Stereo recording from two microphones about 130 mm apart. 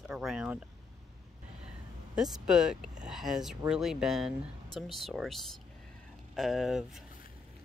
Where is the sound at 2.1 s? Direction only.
5° right (ahead or behind).